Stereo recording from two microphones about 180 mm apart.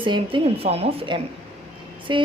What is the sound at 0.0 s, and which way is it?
Speech, 30° right (ahead or behind).